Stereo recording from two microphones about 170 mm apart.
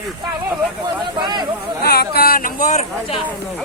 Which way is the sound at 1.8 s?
65° left (ahead or behind).